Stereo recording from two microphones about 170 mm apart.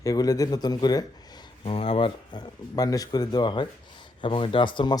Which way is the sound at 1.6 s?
35° left (ahead or behind).